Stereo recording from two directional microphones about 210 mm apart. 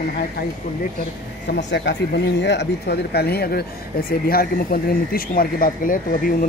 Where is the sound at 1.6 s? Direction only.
55° left (ahead or behind).